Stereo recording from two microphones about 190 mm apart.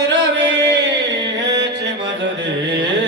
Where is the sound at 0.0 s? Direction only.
65° right (ahead or behind).